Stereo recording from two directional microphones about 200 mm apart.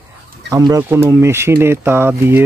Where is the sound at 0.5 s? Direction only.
15° right (ahead or behind).